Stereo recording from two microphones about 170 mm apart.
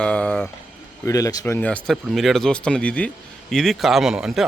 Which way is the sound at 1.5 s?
10° left (ahead or behind).